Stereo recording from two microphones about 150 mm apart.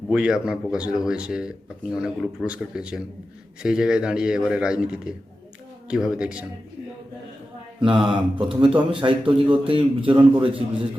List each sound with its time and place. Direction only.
0.1 s speech: 5° right (ahead or behind)
7.8 s a man's voice: 35° right (ahead or behind)